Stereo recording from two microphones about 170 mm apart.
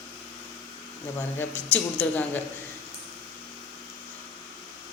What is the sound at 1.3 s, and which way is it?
Speech, 10° left (ahead or behind).